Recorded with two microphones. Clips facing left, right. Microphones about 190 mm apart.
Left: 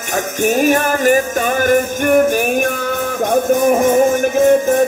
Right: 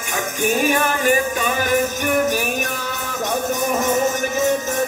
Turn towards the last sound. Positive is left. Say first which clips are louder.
# left 9 dB
turn(degrees=55)  # may be behind; listen again after turning